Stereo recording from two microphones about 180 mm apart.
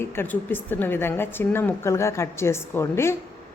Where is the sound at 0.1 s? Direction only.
10° left (ahead or behind).